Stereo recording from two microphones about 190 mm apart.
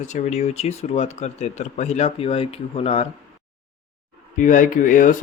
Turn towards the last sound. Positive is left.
turn(degrees=45)  # may be behind; listen again after turning